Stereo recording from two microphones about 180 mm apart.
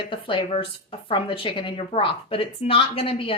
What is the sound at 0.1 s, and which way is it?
A woman's voice, 30° left (ahead or behind).